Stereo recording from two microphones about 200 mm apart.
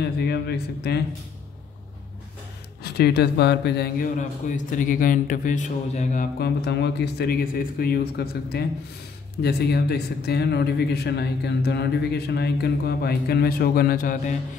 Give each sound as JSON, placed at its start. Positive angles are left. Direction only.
{"t": 0.0, "sound": "a man's voice", "side_deg": 55}
{"t": 2.8, "sound": "a man's voice", "side_deg": 50}